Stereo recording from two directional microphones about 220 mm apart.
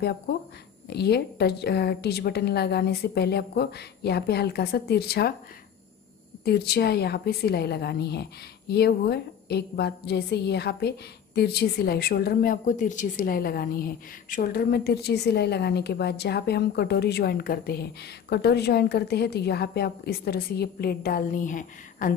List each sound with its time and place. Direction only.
0.8 s a woman's voice: 50° left (ahead or behind)
6.4 s a woman's voice: 45° left (ahead or behind)